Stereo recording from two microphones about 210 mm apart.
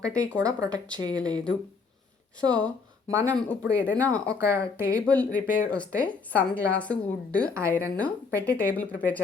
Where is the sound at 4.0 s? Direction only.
5° left (ahead or behind).